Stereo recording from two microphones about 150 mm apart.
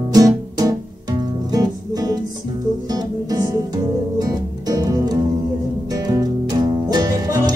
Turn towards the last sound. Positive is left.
turn(degrees=-20)  # may be behind; listen again after turning